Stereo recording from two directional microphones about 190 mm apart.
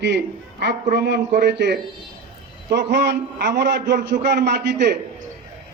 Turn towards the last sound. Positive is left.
turn(degrees=-65)  # may be behind; listen again after turning